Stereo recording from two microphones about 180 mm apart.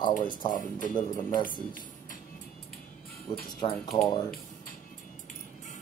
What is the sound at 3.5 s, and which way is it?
Speech, 25° left (ahead or behind).